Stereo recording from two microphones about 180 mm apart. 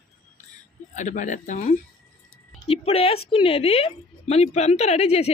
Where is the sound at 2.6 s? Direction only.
35° left (ahead or behind).